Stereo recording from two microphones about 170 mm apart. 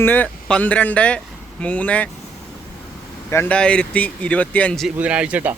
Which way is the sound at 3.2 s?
15° left (ahead or behind).